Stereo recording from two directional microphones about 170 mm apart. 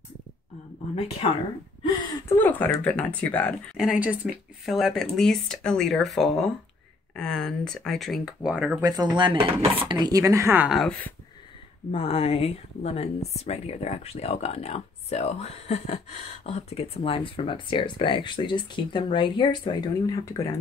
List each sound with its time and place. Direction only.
2.2 s speech: 10° left (ahead or behind)
3.7 s speech: 5° right (ahead or behind)
8.8 s dishes: 25° right (ahead or behind)
9.8 s speech: 25° right (ahead or behind); by 11.0 s centre (ahead or behind)
11.9 s speech: 35° left (ahead or behind); by 20.4 s 20° left (ahead or behind)